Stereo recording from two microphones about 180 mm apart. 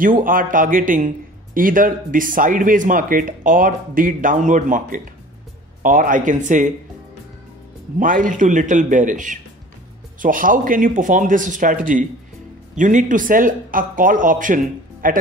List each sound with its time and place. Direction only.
0.0 s a man's voice: 50° right (ahead or behind)
8.0 s a man's voice: 50° right (ahead or behind)